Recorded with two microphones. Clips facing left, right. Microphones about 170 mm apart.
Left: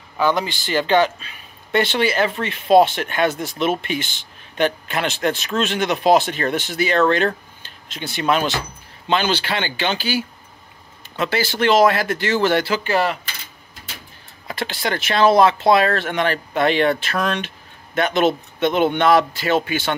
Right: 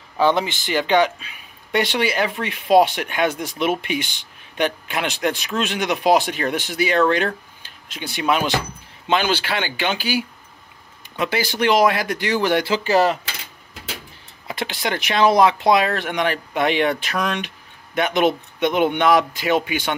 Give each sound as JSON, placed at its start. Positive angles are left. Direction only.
{"t": 0.2, "sound": "speech", "side_deg": -25}
{"t": 12.7, "sound": "speech", "side_deg": -35}
{"t": 14.5, "sound": "speech", "side_deg": -20}